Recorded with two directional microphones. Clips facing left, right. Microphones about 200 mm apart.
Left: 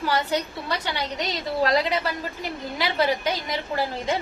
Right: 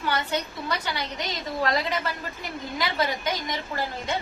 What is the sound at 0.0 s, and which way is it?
A woman's voice, 35° left (ahead or behind).